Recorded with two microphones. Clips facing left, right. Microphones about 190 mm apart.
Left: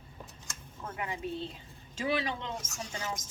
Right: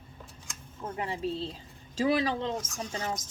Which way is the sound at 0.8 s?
30° right (ahead or behind).